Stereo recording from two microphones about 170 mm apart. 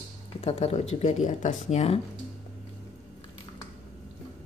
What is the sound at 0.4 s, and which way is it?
Speech, 35° left (ahead or behind).